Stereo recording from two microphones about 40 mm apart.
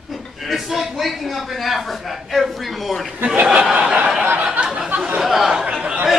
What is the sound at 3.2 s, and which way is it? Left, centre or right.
Speech, right.